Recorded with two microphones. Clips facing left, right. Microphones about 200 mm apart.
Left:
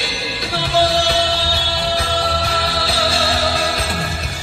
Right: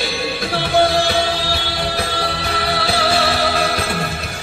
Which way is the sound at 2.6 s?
60° right (ahead or behind).